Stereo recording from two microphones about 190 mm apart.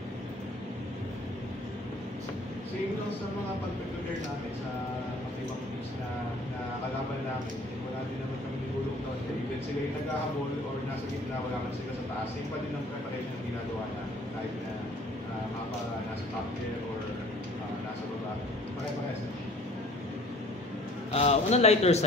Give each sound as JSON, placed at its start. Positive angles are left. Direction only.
{"t": 21.1, "sound": "a man's voice", "side_deg": 35}